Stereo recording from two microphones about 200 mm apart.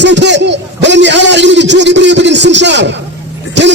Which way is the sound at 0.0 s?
60° right (ahead or behind).